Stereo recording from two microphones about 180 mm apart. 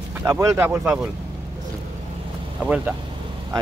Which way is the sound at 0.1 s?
15° right (ahead or behind).